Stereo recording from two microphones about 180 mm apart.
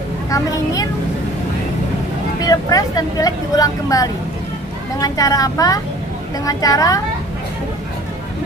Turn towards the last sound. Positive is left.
turn(degrees=20)  # may be behind; listen again after turning